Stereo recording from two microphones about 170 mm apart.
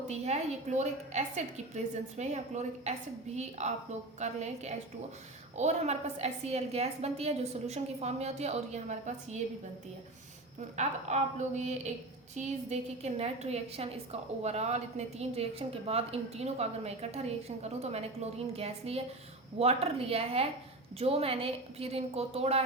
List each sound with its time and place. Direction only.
0.1 s a woman's voice: 40° right (ahead or behind)
10.8 s a woman's voice: 45° right (ahead or behind)